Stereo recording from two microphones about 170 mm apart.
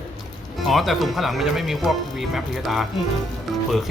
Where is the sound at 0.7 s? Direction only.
Centre (ahead or behind).